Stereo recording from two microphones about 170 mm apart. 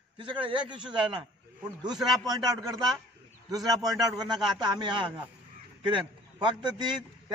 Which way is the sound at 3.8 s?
20° right (ahead or behind).